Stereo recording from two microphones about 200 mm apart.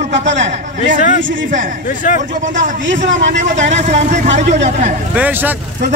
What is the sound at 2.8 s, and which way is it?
Speech, 65° right (ahead or behind).